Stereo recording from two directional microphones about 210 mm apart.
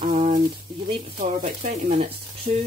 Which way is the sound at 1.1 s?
40° right (ahead or behind).